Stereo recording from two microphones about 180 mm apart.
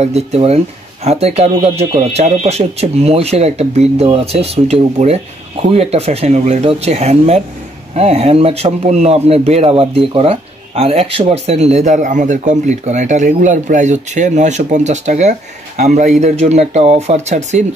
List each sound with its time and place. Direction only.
0.0 s a man's voice: 35° right (ahead or behind)